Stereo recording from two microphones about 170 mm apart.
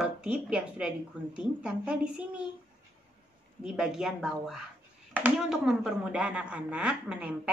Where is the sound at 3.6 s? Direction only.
5° right (ahead or behind).